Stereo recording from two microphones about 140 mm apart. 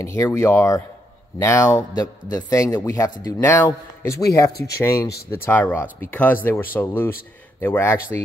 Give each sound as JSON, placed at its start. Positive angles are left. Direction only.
{"t": 0.0, "sound": "a man's voice", "side_deg": 20}